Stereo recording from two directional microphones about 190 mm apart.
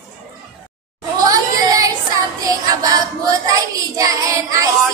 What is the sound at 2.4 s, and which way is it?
Child singing, 20° right (ahead or behind).